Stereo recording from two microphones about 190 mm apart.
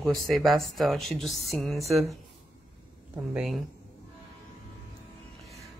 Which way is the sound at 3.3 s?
Centre (ahead or behind).